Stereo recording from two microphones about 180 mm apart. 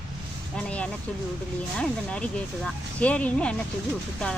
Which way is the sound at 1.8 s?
5° left (ahead or behind).